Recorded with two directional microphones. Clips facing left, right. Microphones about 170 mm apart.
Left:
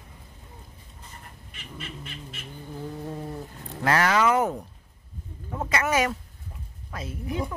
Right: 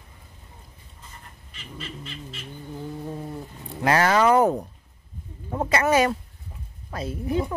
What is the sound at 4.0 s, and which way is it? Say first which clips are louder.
Speech: right 5 dB; 35° right (ahead or behind).